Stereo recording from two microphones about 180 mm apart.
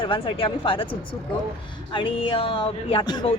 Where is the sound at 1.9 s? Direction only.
30° left (ahead or behind).